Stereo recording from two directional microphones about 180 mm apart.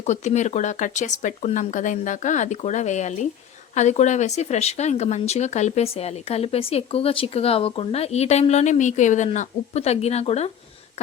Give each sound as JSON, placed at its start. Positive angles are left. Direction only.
{"t": 0.0, "sound": "speech", "side_deg": 40}